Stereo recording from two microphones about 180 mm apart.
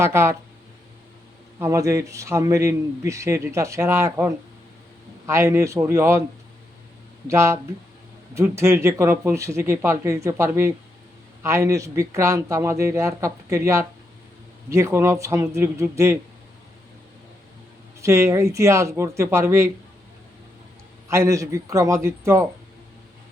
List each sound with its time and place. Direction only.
0.0 s a man's voice: 15° right (ahead or behind)
1.5 s a man's voice: 15° right (ahead or behind)
7.3 s a man's voice: 15° right (ahead or behind)
18.0 s a man's voice: 15° right (ahead or behind)
21.1 s a man's voice: 15° right (ahead or behind)